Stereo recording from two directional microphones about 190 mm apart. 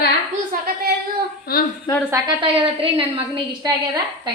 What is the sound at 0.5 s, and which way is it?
Speech, 45° right (ahead or behind).